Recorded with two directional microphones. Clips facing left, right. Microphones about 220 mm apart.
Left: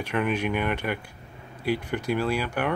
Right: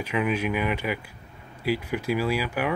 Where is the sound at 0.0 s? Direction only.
5° right (ahead or behind).